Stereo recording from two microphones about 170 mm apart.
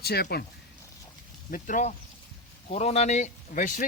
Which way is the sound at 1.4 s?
50° left (ahead or behind).